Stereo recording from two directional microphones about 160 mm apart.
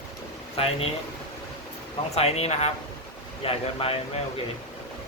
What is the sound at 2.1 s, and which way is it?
Speech, 40° left (ahead or behind).